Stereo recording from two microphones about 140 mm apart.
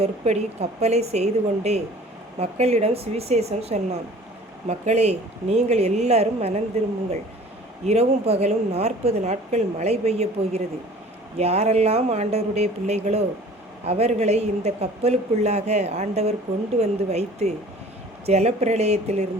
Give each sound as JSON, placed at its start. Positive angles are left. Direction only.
{"t": 0.0, "sound": "speech", "side_deg": -50}
{"t": 7.9, "sound": "speech", "side_deg": -50}